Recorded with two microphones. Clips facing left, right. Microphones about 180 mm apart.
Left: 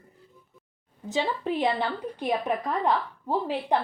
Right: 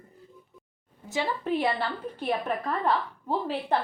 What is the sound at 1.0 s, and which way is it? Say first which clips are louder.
A woman's voice: left 1 dB; 15° left (ahead or behind).